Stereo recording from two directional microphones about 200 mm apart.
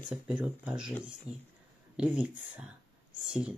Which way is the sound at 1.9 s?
5° right (ahead or behind).